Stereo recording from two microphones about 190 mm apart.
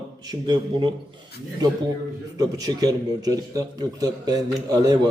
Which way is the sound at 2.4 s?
20° right (ahead or behind).